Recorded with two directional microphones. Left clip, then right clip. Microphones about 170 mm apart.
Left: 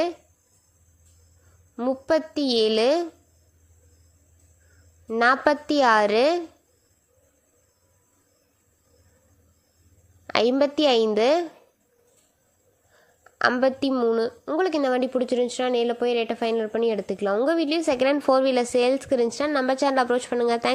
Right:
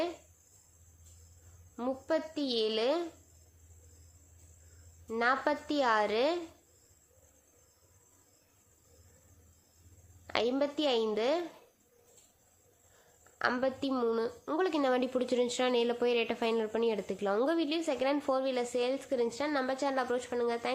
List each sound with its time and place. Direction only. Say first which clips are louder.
1.7 s a woman's voice: left 10 dB; 30° left (ahead or behind)
5.2 s a woman's voice: left 10 dB; 40° left (ahead or behind)
10.2 s a sound: left 10 dB; 45° left (ahead or behind)
10.5 s a woman's voice: left 12 dB; 40° left (ahead or behind)
13.6 s a woman's voice: left 11 dB; 40° left (ahead or behind)
13.9 s a woman's voice: left 9 dB; 25° left (ahead or behind); by 20.7 s 45° left (ahead or behind)